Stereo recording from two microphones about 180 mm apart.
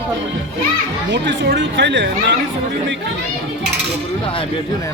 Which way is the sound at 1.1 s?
85° right.